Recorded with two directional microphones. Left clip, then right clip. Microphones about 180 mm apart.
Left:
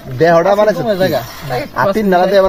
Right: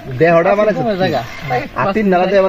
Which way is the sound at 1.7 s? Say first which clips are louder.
Left 3 dB; 20° left (ahead or behind).